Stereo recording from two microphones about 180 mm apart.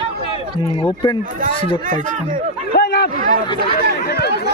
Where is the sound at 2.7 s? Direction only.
65° left (ahead or behind).